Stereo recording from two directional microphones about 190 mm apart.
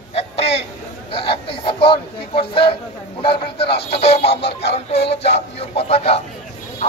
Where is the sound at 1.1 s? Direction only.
30° left (ahead or behind).